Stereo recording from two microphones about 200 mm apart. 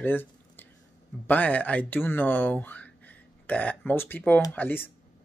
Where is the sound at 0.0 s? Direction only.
10° left (ahead or behind).